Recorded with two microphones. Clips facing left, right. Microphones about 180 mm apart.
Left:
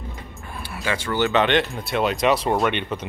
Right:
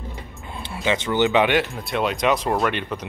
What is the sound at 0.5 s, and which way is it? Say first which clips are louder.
Speech: right 3 dB; 20° right (ahead or behind).